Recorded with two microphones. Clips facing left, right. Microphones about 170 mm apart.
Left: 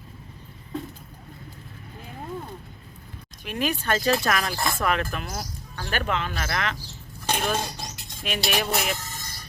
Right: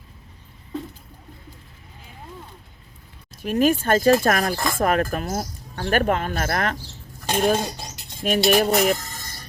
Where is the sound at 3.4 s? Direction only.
45° right (ahead or behind).